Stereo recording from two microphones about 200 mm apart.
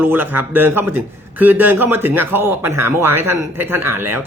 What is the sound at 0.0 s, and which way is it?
Speech, 10° right (ahead or behind).